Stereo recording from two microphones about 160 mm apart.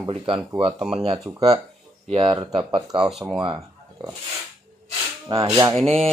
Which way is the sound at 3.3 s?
30° right (ahead or behind).